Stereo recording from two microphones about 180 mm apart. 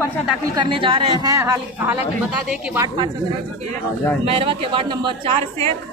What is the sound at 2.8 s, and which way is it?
Speech, 25° right (ahead or behind).